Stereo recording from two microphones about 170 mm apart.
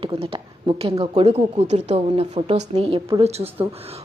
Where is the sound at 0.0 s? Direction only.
30° right (ahead or behind).